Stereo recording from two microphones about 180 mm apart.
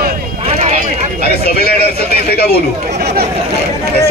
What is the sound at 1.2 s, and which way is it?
Speech, 60° left (ahead or behind).